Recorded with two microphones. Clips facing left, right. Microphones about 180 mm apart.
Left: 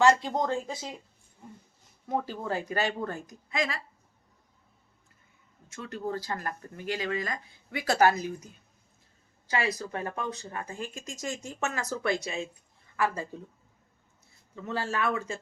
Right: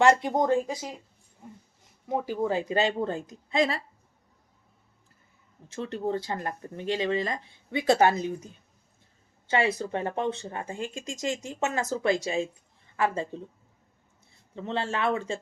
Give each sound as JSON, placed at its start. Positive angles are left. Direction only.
{"t": 0.0, "sound": "speech", "side_deg": -20}
{"t": 2.0, "sound": "speech", "side_deg": -15}
{"t": 5.6, "sound": "speech", "side_deg": -30}
{"t": 9.5, "sound": "speech", "side_deg": -25}
{"t": 14.5, "sound": "speech", "side_deg": -25}